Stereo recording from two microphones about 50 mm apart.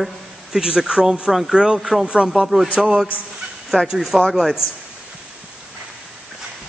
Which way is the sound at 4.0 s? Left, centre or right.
Centre.